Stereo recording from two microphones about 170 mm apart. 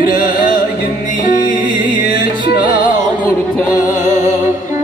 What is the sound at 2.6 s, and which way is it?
Music, 50° left (ahead or behind).